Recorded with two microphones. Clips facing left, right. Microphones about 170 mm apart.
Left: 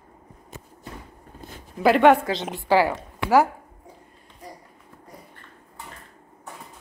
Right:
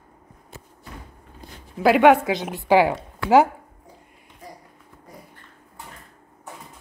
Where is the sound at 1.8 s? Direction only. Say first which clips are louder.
Right 1 dB; 5° right (ahead or behind).